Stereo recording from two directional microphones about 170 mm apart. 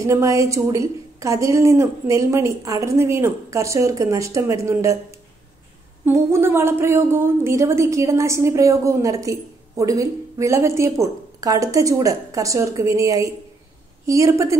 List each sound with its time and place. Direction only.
0.0 s a woman's voice: 20° right (ahead or behind)
6.0 s a woman's voice: 15° right (ahead or behind)